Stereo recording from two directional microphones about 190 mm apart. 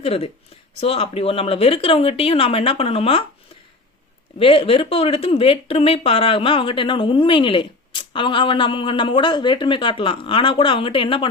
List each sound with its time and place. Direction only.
0.0 s speech: 30° left (ahead or behind)
4.4 s speech: 30° left (ahead or behind)